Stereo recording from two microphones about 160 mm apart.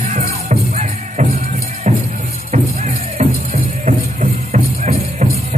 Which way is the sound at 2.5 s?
40° right (ahead or behind).